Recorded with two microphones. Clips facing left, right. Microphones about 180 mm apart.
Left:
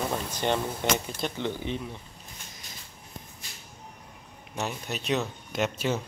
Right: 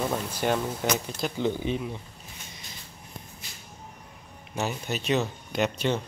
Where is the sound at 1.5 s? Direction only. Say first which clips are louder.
Right 4 dB; 15° right (ahead or behind).